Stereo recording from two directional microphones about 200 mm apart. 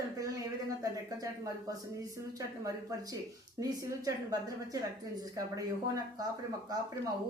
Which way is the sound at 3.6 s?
15° right (ahead or behind).